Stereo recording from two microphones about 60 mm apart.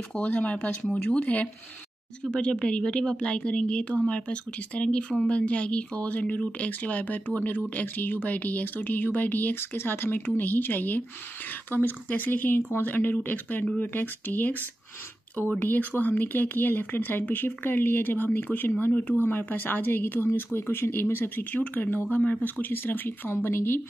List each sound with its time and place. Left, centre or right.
0.1 s speech: left